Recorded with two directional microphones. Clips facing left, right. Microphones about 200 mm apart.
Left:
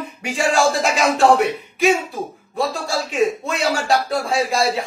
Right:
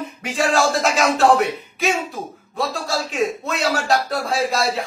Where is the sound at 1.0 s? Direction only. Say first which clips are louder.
Left 2 dB; centre (ahead or behind).